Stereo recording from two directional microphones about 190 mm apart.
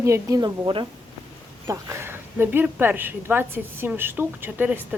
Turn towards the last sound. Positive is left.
turn(degrees=-10)  # may be behind; listen again after turning